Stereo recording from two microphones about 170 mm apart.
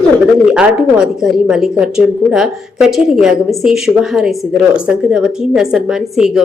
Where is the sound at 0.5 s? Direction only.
5° right (ahead or behind).